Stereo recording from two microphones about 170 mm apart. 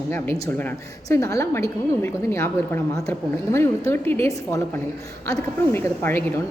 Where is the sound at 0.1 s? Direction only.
15° left (ahead or behind).